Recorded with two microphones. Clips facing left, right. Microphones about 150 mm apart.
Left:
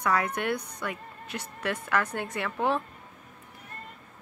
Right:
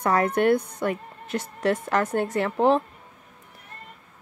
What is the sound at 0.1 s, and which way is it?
A woman's voice, 50° right (ahead or behind).